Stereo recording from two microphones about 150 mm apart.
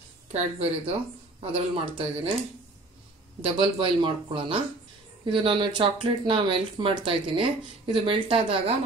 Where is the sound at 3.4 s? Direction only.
35° right (ahead or behind).